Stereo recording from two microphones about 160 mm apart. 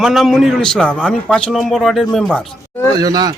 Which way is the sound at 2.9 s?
25° right (ahead or behind).